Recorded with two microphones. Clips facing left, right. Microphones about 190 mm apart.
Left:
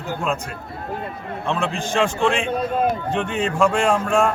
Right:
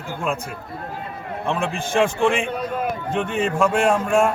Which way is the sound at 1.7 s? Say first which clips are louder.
Right 3 dB; 55° right (ahead or behind).